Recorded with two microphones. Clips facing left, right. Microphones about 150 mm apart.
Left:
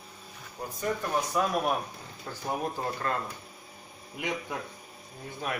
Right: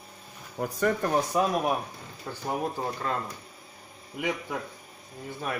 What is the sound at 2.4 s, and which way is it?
Speech, 5° right (ahead or behind).